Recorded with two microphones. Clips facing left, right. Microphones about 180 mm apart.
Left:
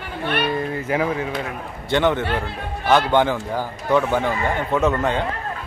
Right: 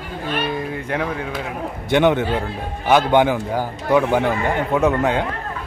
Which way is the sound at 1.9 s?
15° right (ahead or behind).